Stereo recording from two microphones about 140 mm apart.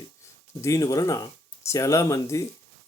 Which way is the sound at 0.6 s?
25° left (ahead or behind).